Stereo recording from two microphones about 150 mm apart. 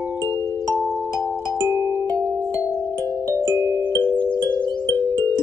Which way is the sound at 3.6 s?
15° right (ahead or behind).